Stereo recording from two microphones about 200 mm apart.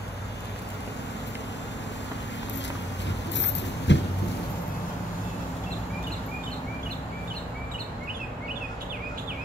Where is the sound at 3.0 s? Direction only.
60° left (ahead or behind).